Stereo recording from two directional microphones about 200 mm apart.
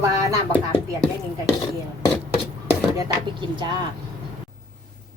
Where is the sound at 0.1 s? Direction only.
15° right (ahead or behind).